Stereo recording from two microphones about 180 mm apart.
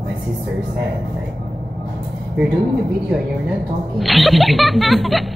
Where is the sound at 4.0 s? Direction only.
Centre (ahead or behind).